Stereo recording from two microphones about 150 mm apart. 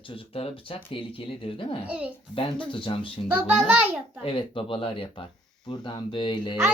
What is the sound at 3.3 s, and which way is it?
Speech, 10° right (ahead or behind).